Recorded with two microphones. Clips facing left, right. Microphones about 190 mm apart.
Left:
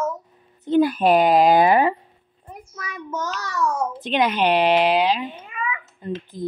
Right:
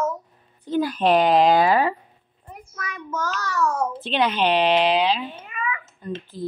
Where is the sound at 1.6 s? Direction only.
20° left (ahead or behind).